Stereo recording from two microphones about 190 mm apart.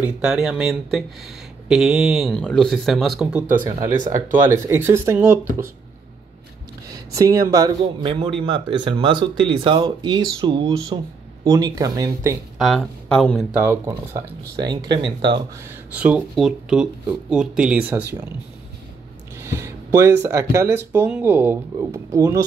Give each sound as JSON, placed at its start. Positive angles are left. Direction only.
{"t": 0.0, "sound": "speech", "side_deg": -5}
{"t": 7.2, "sound": "speech", "side_deg": -15}
{"t": 7.8, "sound": "speech", "side_deg": -30}
{"t": 12.5, "sound": "speech", "side_deg": 0}
{"t": 14.6, "sound": "speech", "side_deg": -20}
{"t": 15.7, "sound": "speech", "side_deg": -5}
{"t": 19.3, "sound": "speech", "side_deg": -15}